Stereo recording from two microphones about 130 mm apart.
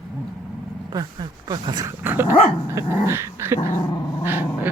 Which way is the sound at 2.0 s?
15° right (ahead or behind).